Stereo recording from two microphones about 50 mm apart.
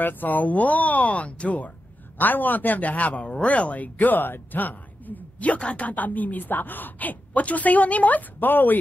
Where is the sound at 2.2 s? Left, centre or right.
Left.